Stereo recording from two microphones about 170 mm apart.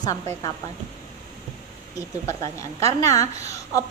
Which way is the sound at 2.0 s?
20° left (ahead or behind).